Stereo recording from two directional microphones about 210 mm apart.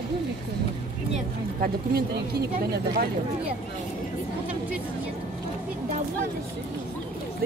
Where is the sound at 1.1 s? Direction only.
45° right (ahead or behind).